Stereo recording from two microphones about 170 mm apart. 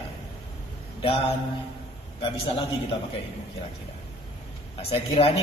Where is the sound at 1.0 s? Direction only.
35° left (ahead or behind).